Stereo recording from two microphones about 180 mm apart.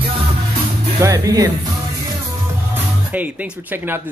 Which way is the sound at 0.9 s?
15° right (ahead or behind).